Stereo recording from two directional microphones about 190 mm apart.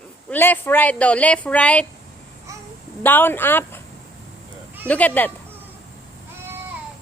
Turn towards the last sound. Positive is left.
turn(degrees=10)  # may be behind; listen again after turning